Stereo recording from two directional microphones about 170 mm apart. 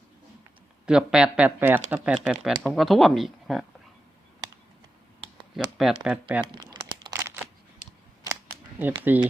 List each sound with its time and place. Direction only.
0.9 s speech: 5° right (ahead or behind)
5.5 s speech: centre (ahead or behind)
6.4 s crumpling: 30° right (ahead or behind)
7.1 s a sound: 15° right (ahead or behind)
8.3 s camera: 20° right (ahead or behind)
8.8 s speech: 10° right (ahead or behind)